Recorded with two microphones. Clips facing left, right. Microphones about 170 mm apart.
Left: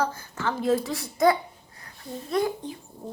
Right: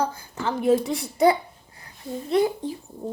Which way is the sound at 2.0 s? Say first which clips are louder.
Right 4 dB; 25° right (ahead or behind).